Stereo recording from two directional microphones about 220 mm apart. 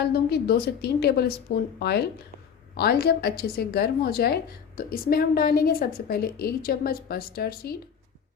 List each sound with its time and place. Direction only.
0.0 s a woman's voice: 45° left (ahead or behind)